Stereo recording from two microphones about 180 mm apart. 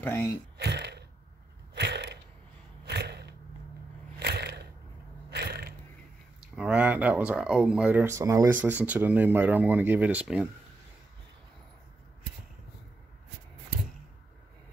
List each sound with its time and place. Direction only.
0.0 s speech: 15° left (ahead or behind)
0.6 s throat clearing: 70° right (ahead or behind)
1.8 s a sound: 70° right (ahead or behind)
6.5 s speech: 5° right (ahead or behind)